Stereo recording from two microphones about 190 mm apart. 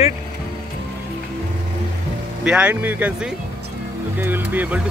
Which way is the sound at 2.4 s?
5° right (ahead or behind).